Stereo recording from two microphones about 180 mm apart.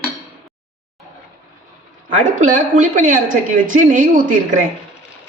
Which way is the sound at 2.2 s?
45° right (ahead or behind).